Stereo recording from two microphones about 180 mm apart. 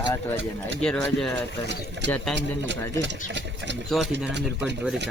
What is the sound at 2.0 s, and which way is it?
Speech, 80° right.